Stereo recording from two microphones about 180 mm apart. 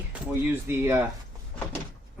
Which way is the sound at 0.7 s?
10° right (ahead or behind).